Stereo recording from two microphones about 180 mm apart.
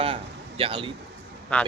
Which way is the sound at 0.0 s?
30° right (ahead or behind).